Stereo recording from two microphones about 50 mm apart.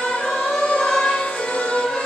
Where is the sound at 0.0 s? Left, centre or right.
Centre.